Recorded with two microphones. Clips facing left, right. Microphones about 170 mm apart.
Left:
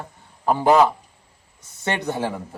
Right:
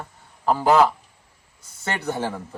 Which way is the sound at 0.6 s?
20° left (ahead or behind).